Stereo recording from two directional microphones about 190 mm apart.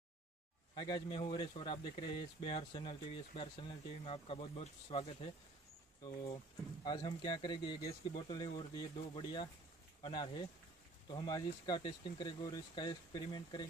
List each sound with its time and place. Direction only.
0.7 s speech: 25° left (ahead or behind)
6.8 s speech: 20° left (ahead or behind)